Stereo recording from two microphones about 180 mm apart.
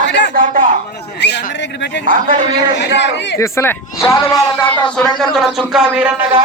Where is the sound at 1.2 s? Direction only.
70° left (ahead or behind).